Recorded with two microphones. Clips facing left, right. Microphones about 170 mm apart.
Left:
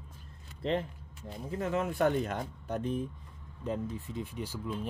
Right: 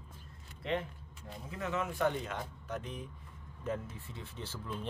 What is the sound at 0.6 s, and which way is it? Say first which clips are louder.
Speech: left 4 dB; 35° left (ahead or behind).